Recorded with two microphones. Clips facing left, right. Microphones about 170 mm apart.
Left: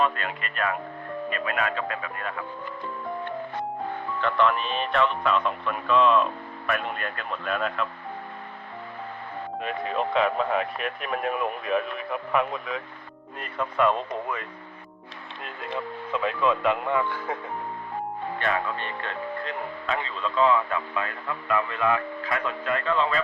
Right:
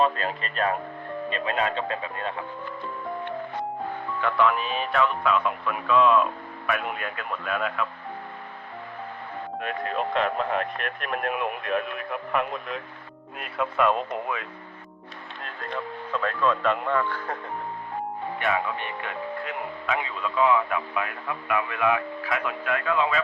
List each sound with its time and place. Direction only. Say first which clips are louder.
0.0 s speech: right 2 dB; 35° right (ahead or behind)
4.2 s speech: even; 5° right (ahead or behind)
9.6 s speech: left 1 dB; centre (ahead or behind)
15.6 s speech: left 1 dB; 5° left (ahead or behind)
18.3 s speech: right 1 dB; 5° right (ahead or behind)
18.8 s speech: even; 15° right (ahead or behind)